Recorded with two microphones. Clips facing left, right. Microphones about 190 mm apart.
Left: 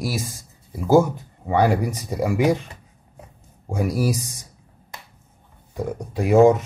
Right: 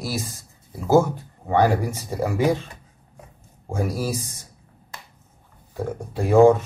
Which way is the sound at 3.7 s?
15° left (ahead or behind).